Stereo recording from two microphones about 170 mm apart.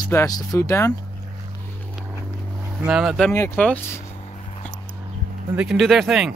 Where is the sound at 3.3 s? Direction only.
10° left (ahead or behind).